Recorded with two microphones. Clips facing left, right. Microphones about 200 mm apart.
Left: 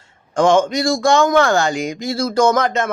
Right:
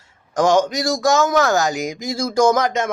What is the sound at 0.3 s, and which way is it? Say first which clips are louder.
Speech: left 2 dB; 5° right (ahead or behind).